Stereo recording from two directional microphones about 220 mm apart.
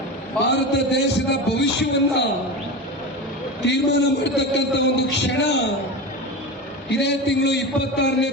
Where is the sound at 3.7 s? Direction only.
50° left (ahead or behind).